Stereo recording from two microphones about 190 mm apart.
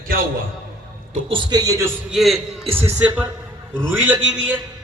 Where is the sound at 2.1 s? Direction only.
Centre (ahead or behind).